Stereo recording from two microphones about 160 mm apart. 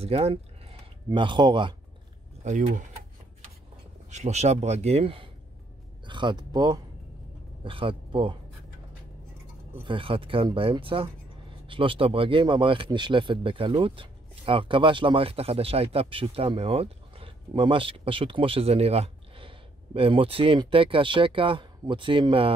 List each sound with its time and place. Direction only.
0.0 s speech: 40° right (ahead or behind)
2.4 s speech: 50° right (ahead or behind)
4.1 s speech: 45° right (ahead or behind)
9.8 s speech: 35° right (ahead or behind)